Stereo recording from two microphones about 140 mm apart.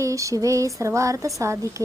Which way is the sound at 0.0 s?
20° right (ahead or behind).